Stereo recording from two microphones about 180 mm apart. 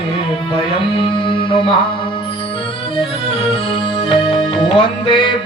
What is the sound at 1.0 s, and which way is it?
Music, 30° left (ahead or behind).